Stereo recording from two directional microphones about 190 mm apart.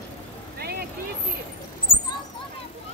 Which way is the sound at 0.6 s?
55° right (ahead or behind).